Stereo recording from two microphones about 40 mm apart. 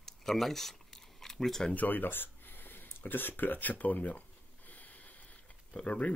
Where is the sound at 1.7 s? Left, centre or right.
Left.